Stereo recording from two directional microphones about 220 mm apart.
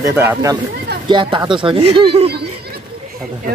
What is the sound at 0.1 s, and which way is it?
Speech, 10° right (ahead or behind).